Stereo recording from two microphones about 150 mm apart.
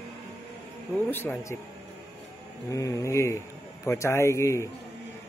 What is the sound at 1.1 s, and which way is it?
Speech, 15° left (ahead or behind).